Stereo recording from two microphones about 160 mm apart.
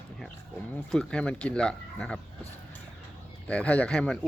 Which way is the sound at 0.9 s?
5° left (ahead or behind).